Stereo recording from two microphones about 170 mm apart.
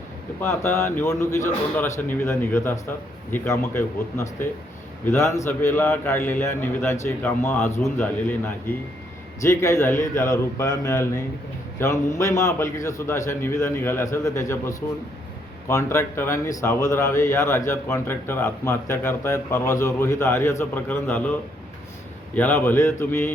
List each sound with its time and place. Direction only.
0.4 s speech: 15° left (ahead or behind)
22.4 s speech: 10° left (ahead or behind)